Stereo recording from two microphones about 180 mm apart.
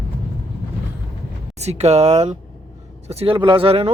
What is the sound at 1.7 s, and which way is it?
Speech, 35° right (ahead or behind).